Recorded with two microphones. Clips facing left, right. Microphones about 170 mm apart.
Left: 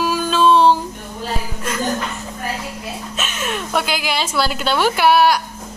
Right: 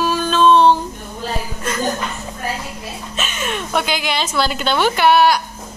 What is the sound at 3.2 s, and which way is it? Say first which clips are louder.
A woman's voice: right 1 dB; centre (ahead or behind).